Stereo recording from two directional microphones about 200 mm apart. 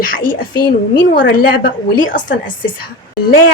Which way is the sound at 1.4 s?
45° left (ahead or behind).